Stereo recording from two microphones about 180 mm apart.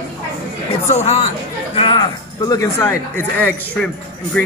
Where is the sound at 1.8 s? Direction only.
25° left (ahead or behind).